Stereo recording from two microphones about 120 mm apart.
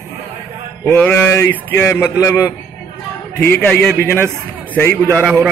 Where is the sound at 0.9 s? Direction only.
20° left (ahead or behind).